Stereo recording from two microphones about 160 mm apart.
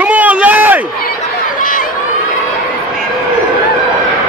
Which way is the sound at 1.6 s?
55° left (ahead or behind).